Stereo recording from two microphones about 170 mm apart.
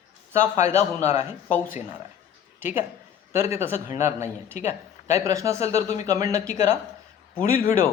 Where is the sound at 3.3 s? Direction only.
15° right (ahead or behind).